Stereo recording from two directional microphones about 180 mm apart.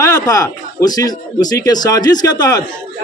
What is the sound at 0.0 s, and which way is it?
A man's voice, 20° left (ahead or behind).